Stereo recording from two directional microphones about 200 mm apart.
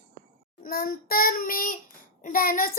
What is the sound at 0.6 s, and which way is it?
A child's voice, 45° left (ahead or behind).